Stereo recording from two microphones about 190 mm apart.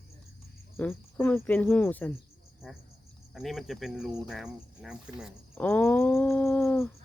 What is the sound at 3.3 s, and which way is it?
Speech, centre (ahead or behind).